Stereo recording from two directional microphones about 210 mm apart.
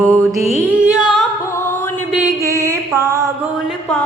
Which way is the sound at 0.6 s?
5° right (ahead or behind).